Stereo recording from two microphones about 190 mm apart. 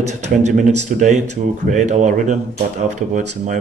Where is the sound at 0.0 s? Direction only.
35° right (ahead or behind).